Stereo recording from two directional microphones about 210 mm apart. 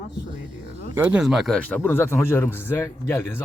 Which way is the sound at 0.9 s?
5° right (ahead or behind).